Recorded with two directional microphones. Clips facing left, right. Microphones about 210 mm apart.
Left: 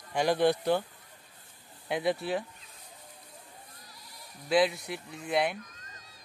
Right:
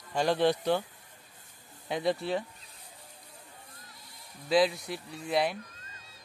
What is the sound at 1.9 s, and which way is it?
Speech, 5° left (ahead or behind).